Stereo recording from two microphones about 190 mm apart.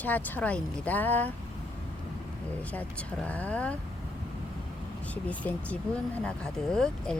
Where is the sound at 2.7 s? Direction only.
5° left (ahead or behind).